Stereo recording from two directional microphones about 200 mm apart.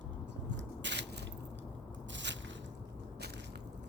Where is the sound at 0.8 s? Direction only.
60° right (ahead or behind).